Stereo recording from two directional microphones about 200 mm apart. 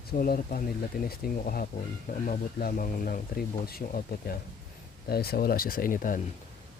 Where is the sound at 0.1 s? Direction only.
45° left (ahead or behind).